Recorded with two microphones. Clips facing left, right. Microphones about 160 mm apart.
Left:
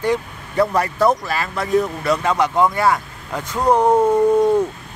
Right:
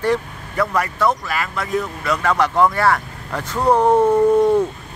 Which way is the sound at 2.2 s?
15° left (ahead or behind).